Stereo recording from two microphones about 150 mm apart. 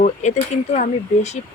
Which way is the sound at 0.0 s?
50° left (ahead or behind).